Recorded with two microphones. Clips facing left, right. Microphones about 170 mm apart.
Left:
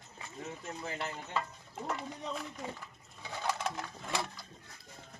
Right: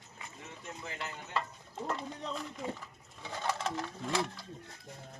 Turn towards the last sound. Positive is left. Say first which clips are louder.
# right 4 dB
turn(degrees=0)  # may be behind; listen again after turning